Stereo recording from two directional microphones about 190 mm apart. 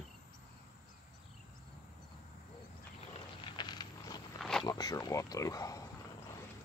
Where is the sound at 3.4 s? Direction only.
25° left (ahead or behind).